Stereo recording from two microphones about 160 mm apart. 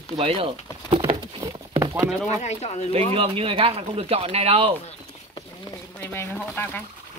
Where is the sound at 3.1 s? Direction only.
35° right (ahead or behind).